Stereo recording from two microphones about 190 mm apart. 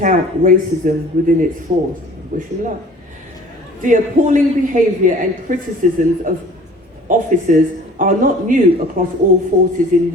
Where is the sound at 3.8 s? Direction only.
45° right (ahead or behind).